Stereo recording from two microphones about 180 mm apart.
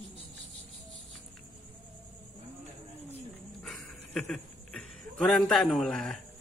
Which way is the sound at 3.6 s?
5° left (ahead or behind).